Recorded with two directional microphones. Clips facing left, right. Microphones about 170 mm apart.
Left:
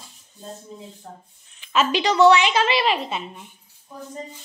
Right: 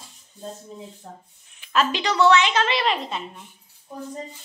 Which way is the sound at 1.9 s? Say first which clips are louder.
Left 4 dB; 15° left (ahead or behind).